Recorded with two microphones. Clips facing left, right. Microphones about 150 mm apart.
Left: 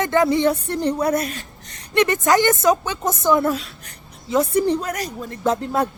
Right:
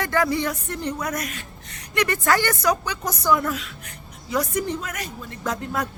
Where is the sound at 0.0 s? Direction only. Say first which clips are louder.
Left 6 dB; 20° left (ahead or behind).